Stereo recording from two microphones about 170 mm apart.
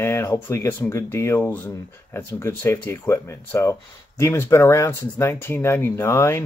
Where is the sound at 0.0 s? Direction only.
15° left (ahead or behind).